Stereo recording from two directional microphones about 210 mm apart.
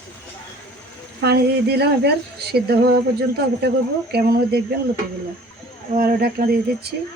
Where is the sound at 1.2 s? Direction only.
50° right (ahead or behind).